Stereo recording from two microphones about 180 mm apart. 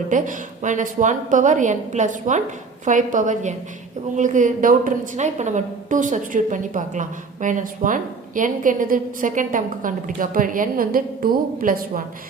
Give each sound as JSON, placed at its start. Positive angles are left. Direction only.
{"t": 0.1, "sound": "a woman's voice", "side_deg": -45}